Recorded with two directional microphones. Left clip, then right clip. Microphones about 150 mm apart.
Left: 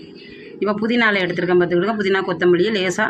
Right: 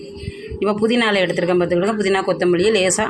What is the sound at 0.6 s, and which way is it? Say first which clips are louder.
Speech: even; 25° right (ahead or behind).